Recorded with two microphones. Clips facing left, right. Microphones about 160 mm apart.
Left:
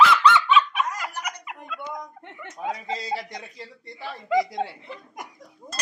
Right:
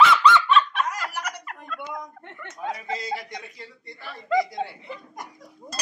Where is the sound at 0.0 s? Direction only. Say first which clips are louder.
Even; centre (ahead or behind).